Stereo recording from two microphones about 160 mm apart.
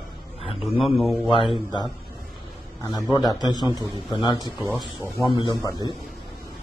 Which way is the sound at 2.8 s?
25° left (ahead or behind).